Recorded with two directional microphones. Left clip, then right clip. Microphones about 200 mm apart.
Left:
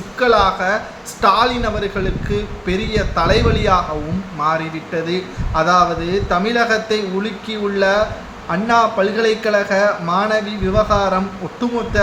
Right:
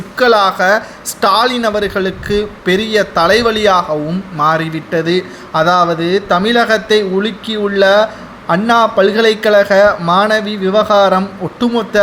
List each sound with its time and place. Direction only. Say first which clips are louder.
0.2 s a man's voice: right 4 dB; 35° right (ahead or behind)